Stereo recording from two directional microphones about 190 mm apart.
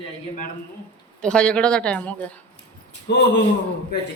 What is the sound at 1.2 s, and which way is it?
Speech, 5° left (ahead or behind).